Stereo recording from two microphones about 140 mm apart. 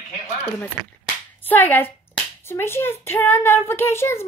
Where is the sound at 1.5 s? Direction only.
15° left (ahead or behind).